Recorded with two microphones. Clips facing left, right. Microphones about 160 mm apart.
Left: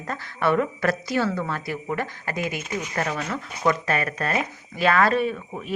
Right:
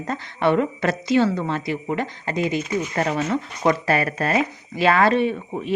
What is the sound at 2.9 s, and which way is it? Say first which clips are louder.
A woman's voice: right 5 dB; 30° right (ahead or behind).